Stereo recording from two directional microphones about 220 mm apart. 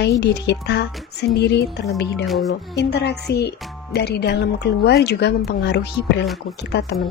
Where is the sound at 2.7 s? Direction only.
50° left (ahead or behind).